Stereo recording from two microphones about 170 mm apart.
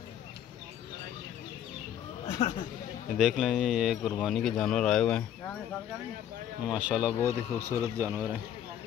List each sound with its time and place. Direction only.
2.2 s chatter: 45° left (ahead or behind)
3.2 s speech: centre (ahead or behind)
6.6 s speech: 5° right (ahead or behind)
7.2 s speech: 20° right (ahead or behind)
8.1 s speech: 5° right (ahead or behind)